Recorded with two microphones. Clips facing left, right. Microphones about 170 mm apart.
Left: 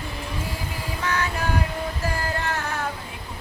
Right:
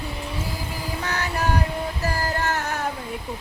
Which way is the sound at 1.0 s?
35° right (ahead or behind).